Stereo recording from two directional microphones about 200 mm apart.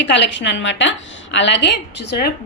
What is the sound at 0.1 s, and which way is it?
A woman's voice, 65° left (ahead or behind).